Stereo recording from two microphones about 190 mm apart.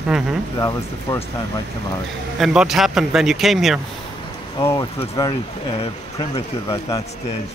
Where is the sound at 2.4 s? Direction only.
5° right (ahead or behind).